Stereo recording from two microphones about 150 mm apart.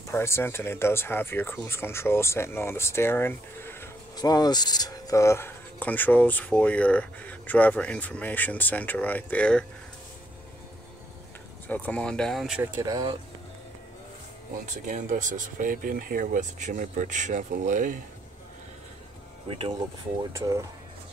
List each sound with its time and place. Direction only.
0.1 s speech: 15° left (ahead or behind)
4.2 s speech: 25° left (ahead or behind); by 9.7 s 5° left (ahead or behind)
11.6 s speech: 10° left (ahead or behind)
12.7 s speech: 30° right (ahead or behind)
14.7 s speech: 55° right (ahead or behind)
19.4 s speech: 35° right (ahead or behind)